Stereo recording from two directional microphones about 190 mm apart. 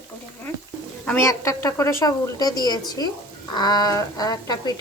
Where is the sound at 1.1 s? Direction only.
15° left (ahead or behind).